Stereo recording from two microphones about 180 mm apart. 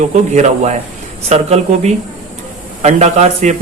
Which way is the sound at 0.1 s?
40° right (ahead or behind).